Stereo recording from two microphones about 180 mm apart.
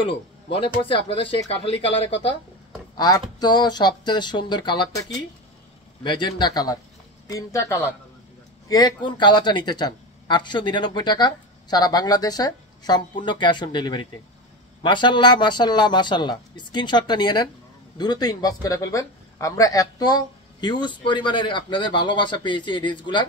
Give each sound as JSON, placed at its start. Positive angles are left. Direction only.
{"t": 0.0, "sound": "speech", "side_deg": 30}
{"t": 3.0, "sound": "speech", "side_deg": 20}
{"t": 6.0, "sound": "speech", "side_deg": 25}